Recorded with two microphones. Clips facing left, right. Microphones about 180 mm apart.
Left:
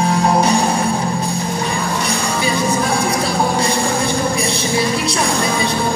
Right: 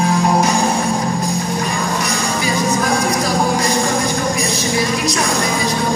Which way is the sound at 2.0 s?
30° left (ahead or behind).